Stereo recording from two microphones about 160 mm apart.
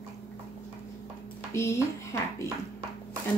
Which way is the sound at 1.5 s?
20° left (ahead or behind).